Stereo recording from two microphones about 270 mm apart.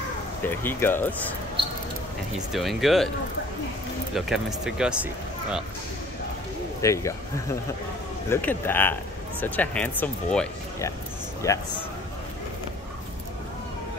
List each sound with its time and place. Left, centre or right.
0.4 s speech: centre
1.6 s mouse: centre
2.5 s speech: centre
4.1 s speech: centre
6.8 s speech: centre